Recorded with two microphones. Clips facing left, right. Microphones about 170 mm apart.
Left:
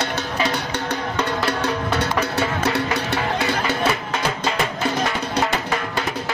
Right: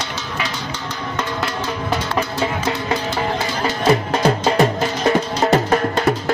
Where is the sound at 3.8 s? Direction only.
35° right (ahead or behind).